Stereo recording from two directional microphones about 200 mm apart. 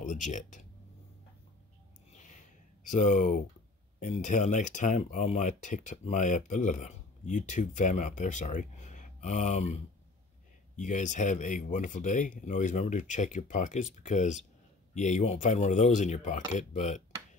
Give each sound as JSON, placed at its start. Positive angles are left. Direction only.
{"t": 0.0, "sound": "speech", "side_deg": 40}
{"t": 2.8, "sound": "speech", "side_deg": 40}
{"t": 10.8, "sound": "speech", "side_deg": 40}